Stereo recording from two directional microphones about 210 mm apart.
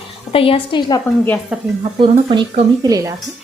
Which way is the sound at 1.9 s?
25° right (ahead or behind).